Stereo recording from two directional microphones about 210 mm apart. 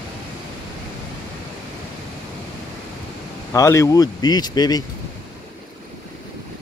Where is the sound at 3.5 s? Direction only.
15° left (ahead or behind).